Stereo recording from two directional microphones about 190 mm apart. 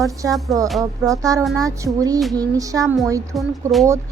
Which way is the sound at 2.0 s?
20° right (ahead or behind).